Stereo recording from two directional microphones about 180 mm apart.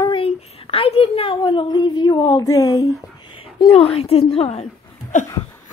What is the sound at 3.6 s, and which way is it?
A woman's voice, 30° left (ahead or behind).